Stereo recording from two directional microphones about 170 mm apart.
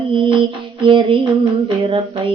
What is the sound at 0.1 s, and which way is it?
Music, 30° right (ahead or behind).